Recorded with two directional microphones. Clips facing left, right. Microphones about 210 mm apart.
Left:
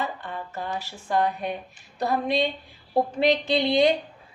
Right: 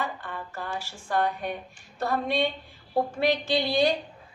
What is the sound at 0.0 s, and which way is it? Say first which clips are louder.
A woman's voice: left 2 dB; 20° left (ahead or behind).